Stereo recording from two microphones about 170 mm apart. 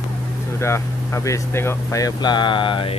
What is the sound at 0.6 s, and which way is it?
Speech, 15° left (ahead or behind).